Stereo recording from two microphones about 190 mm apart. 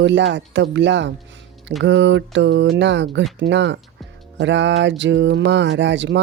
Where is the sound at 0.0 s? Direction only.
70° right (ahead or behind).